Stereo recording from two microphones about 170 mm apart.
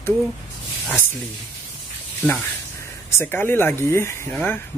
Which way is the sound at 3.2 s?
10° left (ahead or behind).